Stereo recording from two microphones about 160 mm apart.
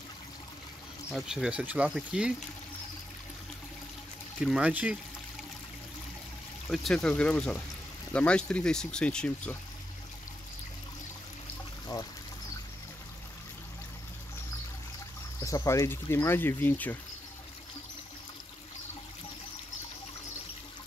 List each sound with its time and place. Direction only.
1.1 s speech: 5° right (ahead or behind)
4.4 s speech: 5° right (ahead or behind)
6.7 s speech: centre (ahead or behind)
11.9 s speech: 25° left (ahead or behind)
15.4 s speech: 20° left (ahead or behind)